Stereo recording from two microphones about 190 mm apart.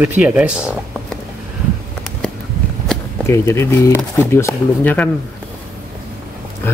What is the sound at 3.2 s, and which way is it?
Speech, 15° left (ahead or behind).